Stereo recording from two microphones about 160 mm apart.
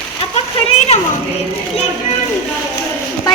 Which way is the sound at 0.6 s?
40° left (ahead or behind).